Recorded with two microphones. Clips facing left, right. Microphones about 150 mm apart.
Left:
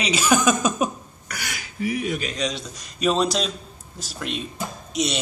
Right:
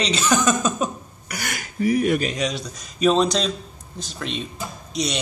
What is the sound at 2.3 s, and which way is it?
A man's voice, centre (ahead or behind).